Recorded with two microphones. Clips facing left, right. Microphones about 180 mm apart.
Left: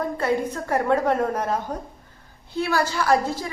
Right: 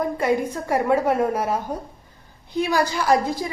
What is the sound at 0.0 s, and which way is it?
A woman's voice, 10° right (ahead or behind).